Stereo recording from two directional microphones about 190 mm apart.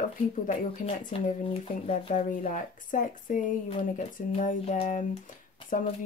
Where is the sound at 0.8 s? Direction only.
30° left (ahead or behind).